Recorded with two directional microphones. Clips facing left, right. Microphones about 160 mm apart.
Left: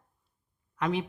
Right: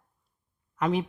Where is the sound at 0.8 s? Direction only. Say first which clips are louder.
Right 3 dB; 40° right (ahead or behind).